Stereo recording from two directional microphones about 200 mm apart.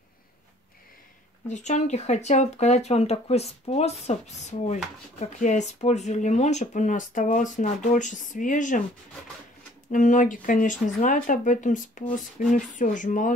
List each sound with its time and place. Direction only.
1.5 s speech: 35° left (ahead or behind)
9.8 s speech: 40° left (ahead or behind)